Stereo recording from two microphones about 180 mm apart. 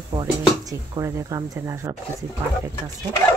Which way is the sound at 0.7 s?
20° right (ahead or behind).